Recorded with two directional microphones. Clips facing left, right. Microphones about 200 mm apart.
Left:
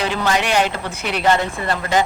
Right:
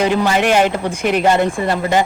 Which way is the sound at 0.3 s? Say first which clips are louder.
Right 4 dB; 50° right (ahead or behind).